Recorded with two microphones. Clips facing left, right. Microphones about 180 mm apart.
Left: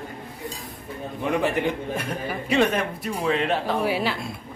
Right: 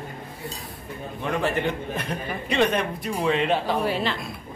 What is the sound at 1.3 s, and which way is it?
A man's voice, 15° left (ahead or behind).